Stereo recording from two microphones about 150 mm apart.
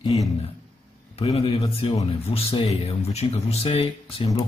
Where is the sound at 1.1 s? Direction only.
45° left (ahead or behind).